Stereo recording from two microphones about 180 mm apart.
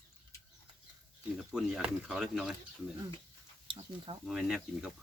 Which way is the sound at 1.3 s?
5° right (ahead or behind).